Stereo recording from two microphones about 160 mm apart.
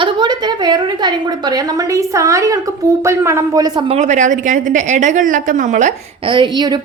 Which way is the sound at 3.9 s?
45° right (ahead or behind).